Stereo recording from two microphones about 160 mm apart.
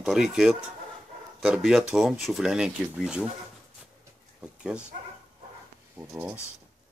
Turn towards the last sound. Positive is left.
turn(degrees=-10)  # may be behind; listen again after turning